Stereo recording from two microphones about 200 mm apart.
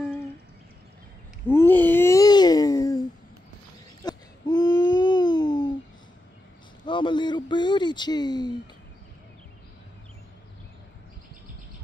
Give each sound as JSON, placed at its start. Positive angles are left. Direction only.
{"t": 1.5, "sound": "a sound", "side_deg": 10}
{"t": 4.0, "sound": "babbling", "side_deg": 20}
{"t": 6.9, "sound": "a man's voice", "side_deg": 25}